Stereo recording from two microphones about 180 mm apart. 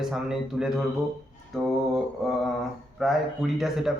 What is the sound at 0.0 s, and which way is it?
Speech, centre (ahead or behind).